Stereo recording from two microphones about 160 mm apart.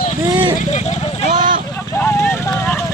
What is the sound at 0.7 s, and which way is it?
Speech, 45° left (ahead or behind).